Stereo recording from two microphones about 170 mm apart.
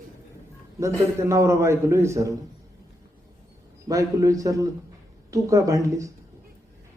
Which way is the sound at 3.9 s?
20° right (ahead or behind).